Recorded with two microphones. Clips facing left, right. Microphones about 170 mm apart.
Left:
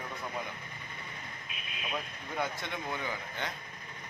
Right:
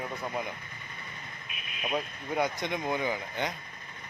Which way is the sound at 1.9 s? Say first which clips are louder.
Right 6 dB; 15° right (ahead or behind).